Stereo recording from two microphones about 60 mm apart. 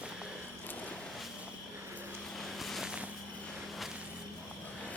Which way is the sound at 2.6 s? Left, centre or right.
Centre.